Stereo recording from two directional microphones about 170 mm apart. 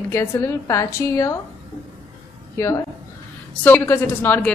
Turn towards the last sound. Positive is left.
turn(degrees=10)  # may be behind; listen again after turning